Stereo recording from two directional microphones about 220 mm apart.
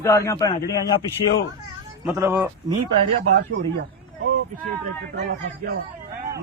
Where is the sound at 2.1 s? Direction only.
10° right (ahead or behind).